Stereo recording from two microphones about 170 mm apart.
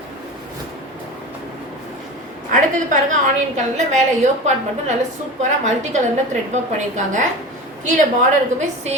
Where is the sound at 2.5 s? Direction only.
50° right (ahead or behind).